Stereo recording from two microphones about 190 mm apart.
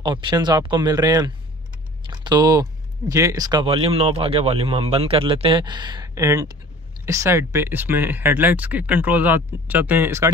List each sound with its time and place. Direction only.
0.0 s speech: 25° right (ahead or behind)